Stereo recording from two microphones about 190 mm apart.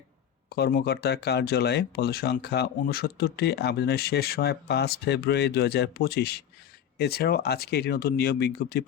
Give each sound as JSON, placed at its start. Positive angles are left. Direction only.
{"t": 0.5, "sound": "speech", "side_deg": 55}